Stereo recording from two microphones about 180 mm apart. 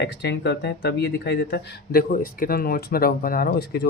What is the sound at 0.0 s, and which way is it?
Speech, 70° left (ahead or behind).